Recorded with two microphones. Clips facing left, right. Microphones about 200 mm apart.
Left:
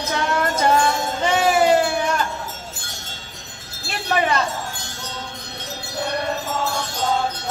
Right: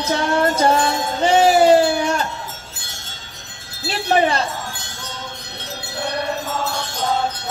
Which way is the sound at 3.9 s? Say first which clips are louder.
Right 4 dB; 30° right (ahead or behind).